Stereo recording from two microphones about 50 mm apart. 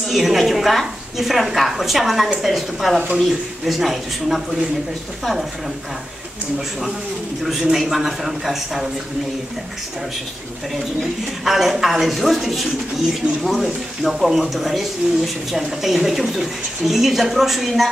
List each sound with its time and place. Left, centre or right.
0.1 s speech: centre
7.4 s speech: centre
10.7 s speech: centre